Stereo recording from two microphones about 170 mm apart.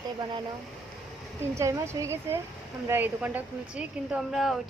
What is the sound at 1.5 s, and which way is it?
Speech, 15° right (ahead or behind).